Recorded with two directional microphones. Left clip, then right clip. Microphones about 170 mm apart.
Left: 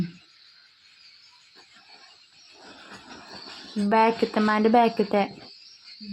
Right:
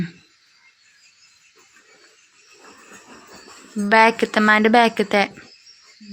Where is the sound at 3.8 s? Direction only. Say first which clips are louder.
Right 6 dB; centre (ahead or behind).